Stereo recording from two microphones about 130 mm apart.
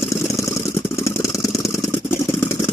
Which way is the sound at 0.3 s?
25° left (ahead or behind).